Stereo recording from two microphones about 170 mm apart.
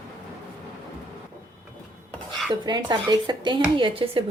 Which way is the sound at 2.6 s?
25° right (ahead or behind).